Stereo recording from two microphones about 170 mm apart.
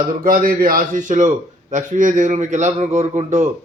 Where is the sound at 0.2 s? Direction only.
55° right (ahead or behind).